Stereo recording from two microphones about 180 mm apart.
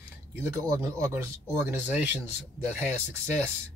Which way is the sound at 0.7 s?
20° right (ahead or behind).